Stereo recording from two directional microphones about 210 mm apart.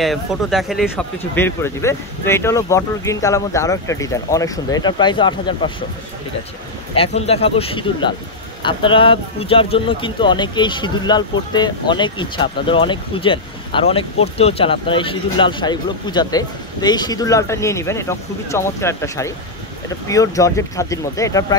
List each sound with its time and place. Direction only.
0.0 s speech: centre (ahead or behind); by 5.7 s 20° left (ahead or behind)
7.0 s speech: 30° left (ahead or behind)